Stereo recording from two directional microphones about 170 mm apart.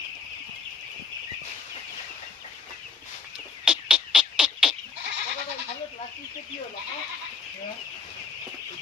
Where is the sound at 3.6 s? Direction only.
5° right (ahead or behind).